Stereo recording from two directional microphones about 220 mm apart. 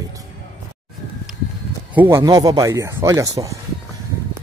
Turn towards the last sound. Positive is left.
turn(degrees=-15)  # may be behind; listen again after turning